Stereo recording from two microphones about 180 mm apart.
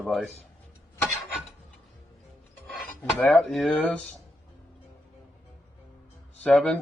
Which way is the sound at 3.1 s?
5° left (ahead or behind).